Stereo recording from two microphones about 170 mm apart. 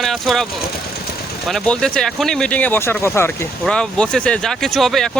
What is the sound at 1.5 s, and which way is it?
Speech, 5° left (ahead or behind).